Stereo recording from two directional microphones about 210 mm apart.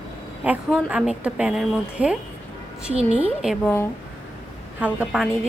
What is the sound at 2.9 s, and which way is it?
Speech, 30° right (ahead or behind).